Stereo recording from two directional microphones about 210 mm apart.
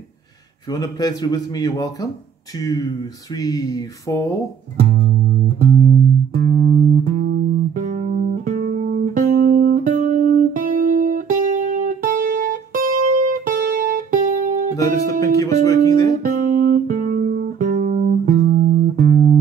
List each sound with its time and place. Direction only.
0.7 s a man's voice: 20° left (ahead or behind)
5.7 s music: 45° right (ahead or behind)
7.7 s music: 35° right (ahead or behind)
14.8 s music: 15° left (ahead or behind)
16.3 s music: 40° right (ahead or behind)